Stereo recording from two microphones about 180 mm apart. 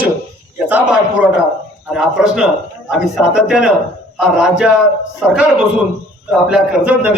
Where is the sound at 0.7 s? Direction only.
5° right (ahead or behind).